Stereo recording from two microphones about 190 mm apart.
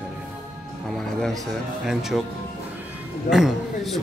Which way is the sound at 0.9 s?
Centre (ahead or behind).